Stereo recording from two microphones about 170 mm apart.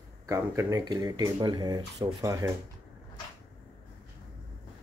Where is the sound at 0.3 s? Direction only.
20° right (ahead or behind).